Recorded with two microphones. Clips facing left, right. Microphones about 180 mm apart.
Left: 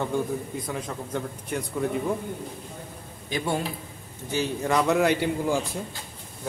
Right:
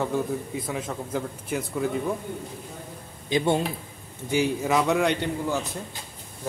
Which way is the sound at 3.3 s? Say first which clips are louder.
Right 5 dB; 20° right (ahead or behind).